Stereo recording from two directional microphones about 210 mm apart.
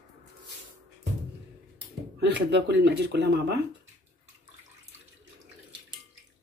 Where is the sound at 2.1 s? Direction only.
55° right (ahead or behind).